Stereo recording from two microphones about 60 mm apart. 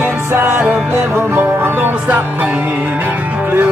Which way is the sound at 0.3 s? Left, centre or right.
Right.